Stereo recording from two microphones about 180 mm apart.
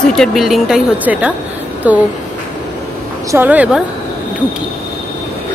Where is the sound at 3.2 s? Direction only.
10° right (ahead or behind).